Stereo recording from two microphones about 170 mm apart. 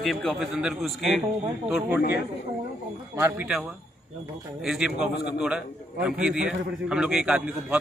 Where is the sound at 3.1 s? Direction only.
10° right (ahead or behind).